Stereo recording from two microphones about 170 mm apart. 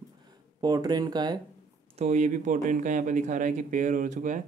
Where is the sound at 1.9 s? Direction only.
45° right (ahead or behind).